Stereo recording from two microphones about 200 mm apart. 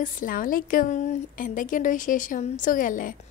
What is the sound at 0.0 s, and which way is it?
A woman's voice, 45° left (ahead or behind).